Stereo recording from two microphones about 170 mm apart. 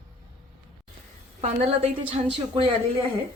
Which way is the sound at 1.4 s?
40° right (ahead or behind).